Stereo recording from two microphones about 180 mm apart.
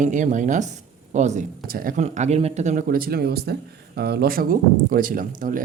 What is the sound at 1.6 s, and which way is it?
Speech, 50° right (ahead or behind).